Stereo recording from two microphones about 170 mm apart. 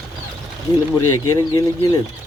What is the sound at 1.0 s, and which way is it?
Speech, 15° left (ahead or behind).